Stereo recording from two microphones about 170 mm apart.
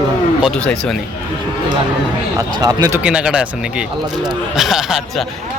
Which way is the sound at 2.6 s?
20° right (ahead or behind).